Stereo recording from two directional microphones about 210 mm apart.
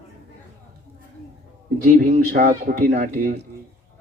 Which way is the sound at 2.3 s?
40° right (ahead or behind).